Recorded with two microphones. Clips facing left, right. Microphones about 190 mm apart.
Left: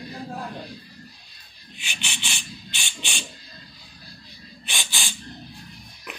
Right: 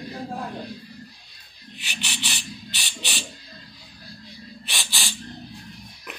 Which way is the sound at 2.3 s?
40° right (ahead or behind).